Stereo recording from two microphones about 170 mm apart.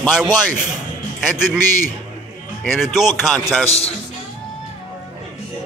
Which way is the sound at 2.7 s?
Centre (ahead or behind).